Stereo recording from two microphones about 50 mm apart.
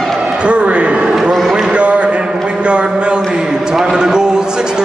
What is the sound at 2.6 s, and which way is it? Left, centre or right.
A man's voice, right.